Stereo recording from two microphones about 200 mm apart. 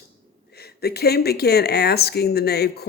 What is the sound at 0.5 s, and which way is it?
Speech, 50° left (ahead or behind).